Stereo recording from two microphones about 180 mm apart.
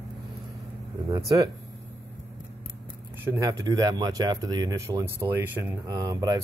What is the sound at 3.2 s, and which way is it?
Speech, 20° right (ahead or behind).